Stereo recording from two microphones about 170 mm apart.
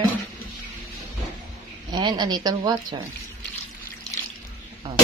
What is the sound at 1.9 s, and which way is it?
Speech, 25° right (ahead or behind).